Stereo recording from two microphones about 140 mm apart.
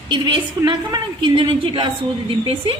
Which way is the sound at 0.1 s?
35° right (ahead or behind).